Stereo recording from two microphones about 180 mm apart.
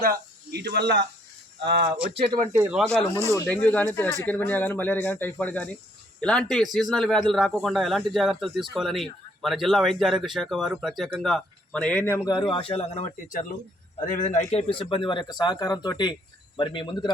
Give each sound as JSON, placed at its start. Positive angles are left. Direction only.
{"t": 0.0, "sound": "speech", "side_deg": -60}
{"t": 2.3, "sound": "speech", "side_deg": -15}
{"t": 3.3, "sound": "a man's voice", "side_deg": 10}